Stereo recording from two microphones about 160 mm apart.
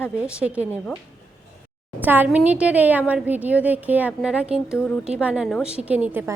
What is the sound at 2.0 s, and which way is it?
A woman's voice, 10° right (ahead or behind).